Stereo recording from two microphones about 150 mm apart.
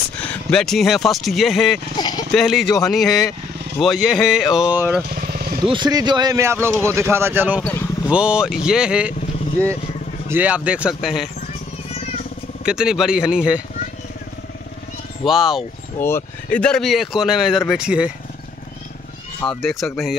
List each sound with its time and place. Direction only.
0.2 s speech: 5° left (ahead or behind)
2.0 s a sound: 30° left (ahead or behind)
2.3 s speech: centre (ahead or behind)
5.1 s vehicle: 70° right (ahead or behind)
5.7 s speech: 30° right (ahead or behind); by 9.1 s 5° right (ahead or behind)
10.2 s speech: 10° right (ahead or behind)
12.6 s speech: 5° right (ahead or behind)
15.2 s speech: 5° right (ahead or behind)
16.0 s speech: 15° left (ahead or behind); by 18.1 s 5° right (ahead or behind)
19.6 s speech: centre (ahead or behind)